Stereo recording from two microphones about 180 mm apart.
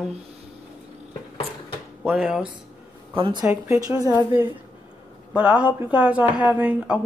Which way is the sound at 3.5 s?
15° right (ahead or behind).